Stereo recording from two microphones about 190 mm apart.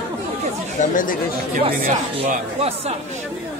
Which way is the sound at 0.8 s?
45° left (ahead or behind).